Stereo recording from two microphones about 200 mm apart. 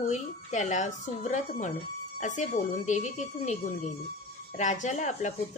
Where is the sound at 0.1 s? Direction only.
35° left (ahead or behind).